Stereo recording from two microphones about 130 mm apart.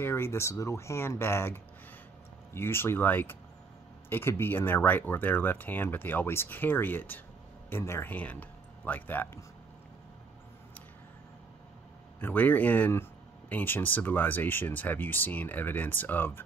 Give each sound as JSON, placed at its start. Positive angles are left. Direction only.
{"t": 0.0, "sound": "speech", "side_deg": 20}
{"t": 12.2, "sound": "speech", "side_deg": 15}